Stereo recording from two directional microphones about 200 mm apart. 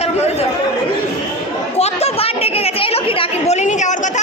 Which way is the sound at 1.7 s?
30° left (ahead or behind).